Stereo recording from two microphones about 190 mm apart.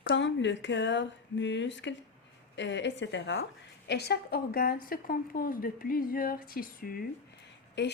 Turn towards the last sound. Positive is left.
turn(degrees=65)  # may be behind; listen again after turning